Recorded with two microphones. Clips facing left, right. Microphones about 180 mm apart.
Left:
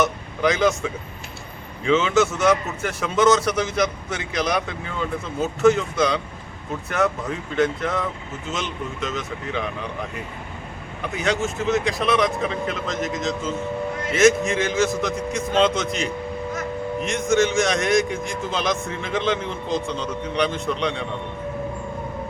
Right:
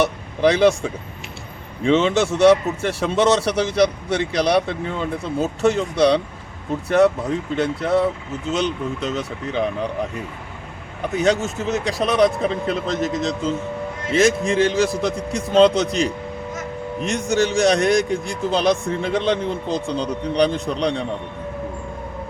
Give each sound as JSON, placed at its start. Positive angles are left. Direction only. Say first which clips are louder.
{"t": 0.0, "sound": "a sound", "louder": "right 4 dB", "side_deg": -35}
{"t": 1.8, "sound": "speech", "louder": "right 2 dB", "side_deg": -35}
{"t": 11.2, "sound": "speech", "louder": "right 4 dB", "side_deg": -35}